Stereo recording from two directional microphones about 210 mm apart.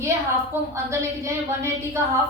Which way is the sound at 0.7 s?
15° right (ahead or behind).